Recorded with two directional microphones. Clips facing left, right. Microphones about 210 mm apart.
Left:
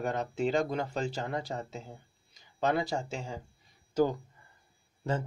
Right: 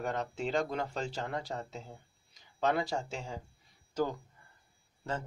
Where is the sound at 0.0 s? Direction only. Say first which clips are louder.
Left 4 dB; 5° left (ahead or behind).